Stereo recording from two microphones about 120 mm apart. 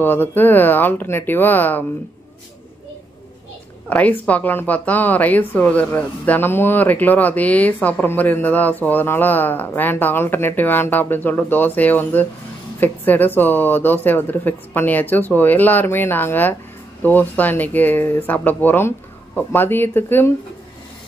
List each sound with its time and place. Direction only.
0.0 s a woman's voice: 15° left (ahead or behind)
3.9 s a woman's voice: 10° left (ahead or behind)